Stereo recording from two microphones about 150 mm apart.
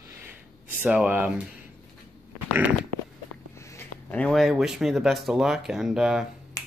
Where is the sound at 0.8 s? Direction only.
10° right (ahead or behind).